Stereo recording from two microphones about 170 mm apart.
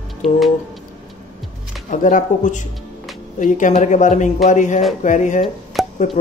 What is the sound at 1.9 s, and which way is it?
A woman's voice, 50° left (ahead or behind).